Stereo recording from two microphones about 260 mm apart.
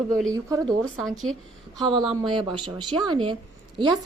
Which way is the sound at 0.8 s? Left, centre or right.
Centre.